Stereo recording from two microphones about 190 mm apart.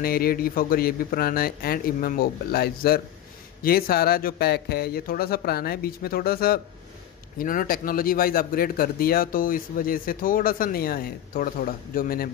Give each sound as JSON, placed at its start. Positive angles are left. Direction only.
{"t": 0.0, "sound": "a man's voice", "side_deg": 50}